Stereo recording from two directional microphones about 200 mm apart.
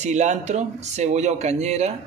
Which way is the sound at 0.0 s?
35° right (ahead or behind).